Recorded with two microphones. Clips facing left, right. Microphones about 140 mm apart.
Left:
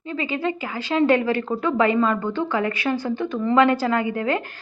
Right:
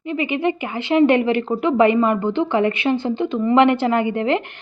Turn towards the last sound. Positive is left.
turn(degrees=-25)  # may be behind; listen again after turning